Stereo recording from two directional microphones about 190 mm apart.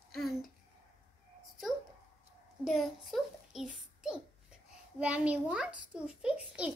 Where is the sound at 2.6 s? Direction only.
Centre (ahead or behind).